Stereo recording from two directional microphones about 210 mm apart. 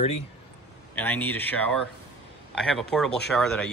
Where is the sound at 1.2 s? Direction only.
10° left (ahead or behind).